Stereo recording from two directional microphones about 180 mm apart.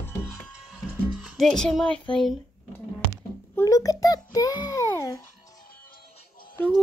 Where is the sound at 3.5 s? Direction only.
20° left (ahead or behind).